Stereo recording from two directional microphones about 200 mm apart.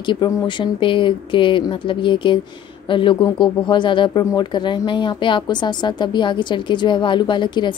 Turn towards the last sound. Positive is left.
turn(degrees=25)  # may be behind; listen again after turning